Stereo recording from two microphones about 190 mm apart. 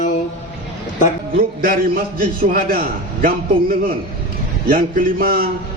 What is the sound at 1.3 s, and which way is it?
A man's voice, 50° right (ahead or behind).